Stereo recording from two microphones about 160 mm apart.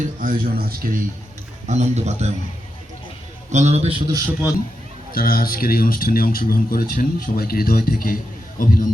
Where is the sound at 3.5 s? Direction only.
45° right (ahead or behind).